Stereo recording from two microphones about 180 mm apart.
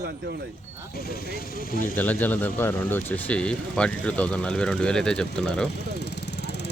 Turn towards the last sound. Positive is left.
turn(degrees=70)  # may be behind; listen again after turning